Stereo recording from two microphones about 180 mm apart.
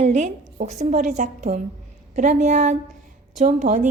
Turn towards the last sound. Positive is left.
turn(degrees=-45)  # may be behind; listen again after turning